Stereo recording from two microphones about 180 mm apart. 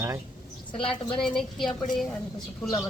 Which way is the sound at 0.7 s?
30° left (ahead or behind).